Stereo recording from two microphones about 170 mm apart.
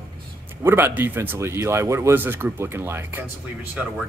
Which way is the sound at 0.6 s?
10° right (ahead or behind).